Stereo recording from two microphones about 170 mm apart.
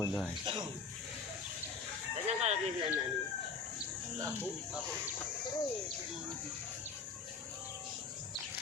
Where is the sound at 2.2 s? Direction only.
40° right (ahead or behind).